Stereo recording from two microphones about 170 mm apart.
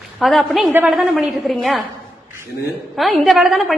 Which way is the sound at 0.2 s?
Centre (ahead or behind).